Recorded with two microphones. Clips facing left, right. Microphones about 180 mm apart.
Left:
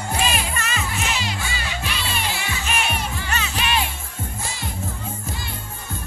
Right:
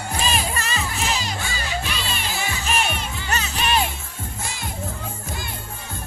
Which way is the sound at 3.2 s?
40° right (ahead or behind).